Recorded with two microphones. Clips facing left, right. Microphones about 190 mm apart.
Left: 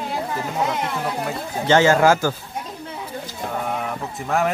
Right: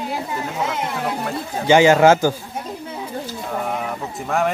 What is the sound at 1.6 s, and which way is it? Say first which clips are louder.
Speech: right 3 dB; 15° right (ahead or behind).